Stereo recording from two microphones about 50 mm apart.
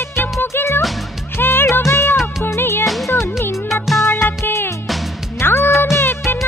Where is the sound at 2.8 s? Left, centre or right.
Centre.